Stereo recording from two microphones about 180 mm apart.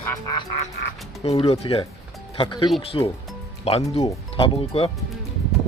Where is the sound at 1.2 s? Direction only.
35° left (ahead or behind).